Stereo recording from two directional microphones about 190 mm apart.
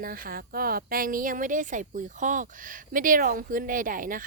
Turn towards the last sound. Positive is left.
turn(degrees=-45)  # may be behind; listen again after turning